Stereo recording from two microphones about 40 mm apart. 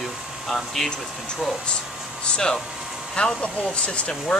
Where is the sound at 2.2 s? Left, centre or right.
Left.